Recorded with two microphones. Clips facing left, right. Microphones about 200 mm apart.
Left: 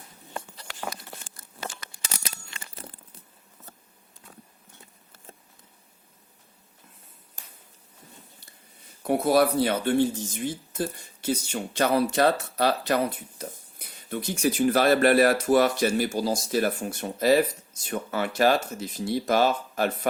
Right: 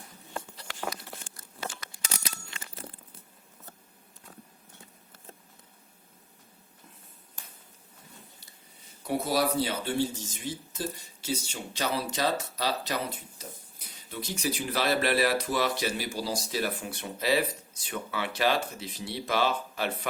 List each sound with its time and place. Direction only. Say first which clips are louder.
9.0 s speech: left 6 dB; 55° left (ahead or behind)